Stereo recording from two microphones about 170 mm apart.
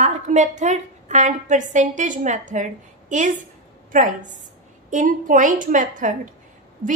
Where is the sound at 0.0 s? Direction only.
45° right (ahead or behind).